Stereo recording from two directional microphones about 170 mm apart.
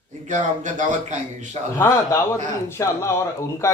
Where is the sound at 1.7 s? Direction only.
15° left (ahead or behind).